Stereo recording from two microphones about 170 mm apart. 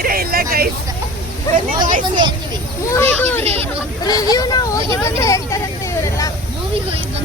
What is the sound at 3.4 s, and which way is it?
Speech, 35° right (ahead or behind).